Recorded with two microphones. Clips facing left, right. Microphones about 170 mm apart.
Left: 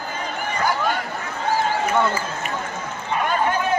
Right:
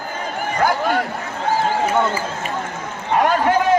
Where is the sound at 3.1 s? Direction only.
70° right (ahead or behind).